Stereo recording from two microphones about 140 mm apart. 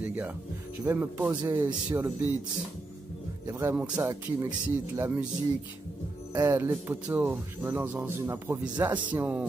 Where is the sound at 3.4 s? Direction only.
10° right (ahead or behind).